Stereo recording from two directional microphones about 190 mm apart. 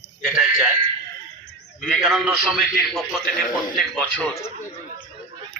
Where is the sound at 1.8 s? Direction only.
Centre (ahead or behind).